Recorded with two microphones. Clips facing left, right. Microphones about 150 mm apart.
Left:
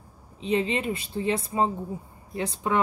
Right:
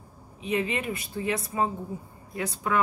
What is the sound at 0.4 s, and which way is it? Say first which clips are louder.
Speech: left 3 dB; 30° left (ahead or behind).